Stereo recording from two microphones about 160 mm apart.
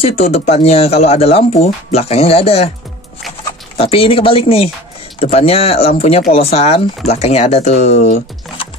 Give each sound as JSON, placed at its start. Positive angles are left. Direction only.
{"t": 0.2, "sound": "speech", "side_deg": 40}
{"t": 3.7, "sound": "speech", "side_deg": 35}